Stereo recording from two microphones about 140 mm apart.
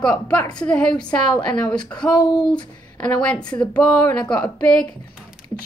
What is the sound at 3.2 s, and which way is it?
A woman's voice, 10° left (ahead or behind).